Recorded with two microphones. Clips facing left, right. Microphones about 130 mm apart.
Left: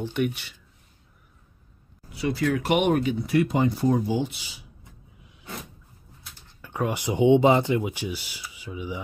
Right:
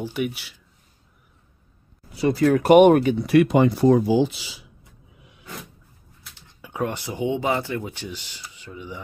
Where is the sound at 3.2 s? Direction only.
75° right (ahead or behind).